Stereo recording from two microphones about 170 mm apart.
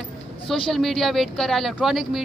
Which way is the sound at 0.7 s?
Centre (ahead or behind).